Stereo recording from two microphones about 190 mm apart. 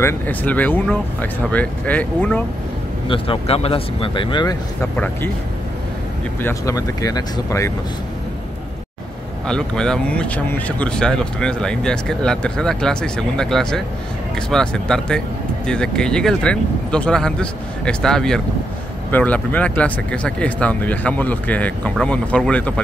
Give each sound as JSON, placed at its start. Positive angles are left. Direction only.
{"t": 0.0, "sound": "speech", "side_deg": 10}
{"t": 3.1, "sound": "speech", "side_deg": 30}
{"t": 4.9, "sound": "speech", "side_deg": 10}
{"t": 6.4, "sound": "speech", "side_deg": 15}
{"t": 9.5, "sound": "speech", "side_deg": 5}